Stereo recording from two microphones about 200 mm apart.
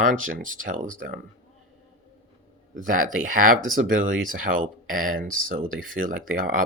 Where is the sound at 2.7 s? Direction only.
40° right (ahead or behind).